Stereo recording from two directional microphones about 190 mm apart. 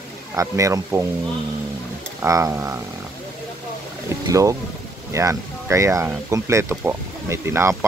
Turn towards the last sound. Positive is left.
turn(degrees=-15)  # may be behind; listen again after turning